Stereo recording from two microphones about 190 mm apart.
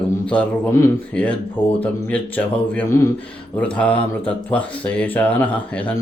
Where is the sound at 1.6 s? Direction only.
25° left (ahead or behind).